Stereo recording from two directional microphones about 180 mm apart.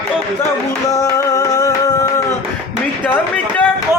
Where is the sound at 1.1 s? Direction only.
20° left (ahead or behind).